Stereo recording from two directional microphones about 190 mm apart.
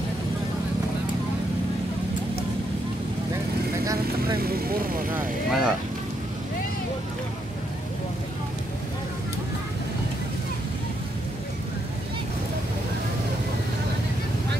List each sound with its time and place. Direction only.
3.8 s vehicle: 20° right (ahead or behind)
4.4 s speech: 50° right (ahead or behind)
5.1 s speech: centre (ahead or behind)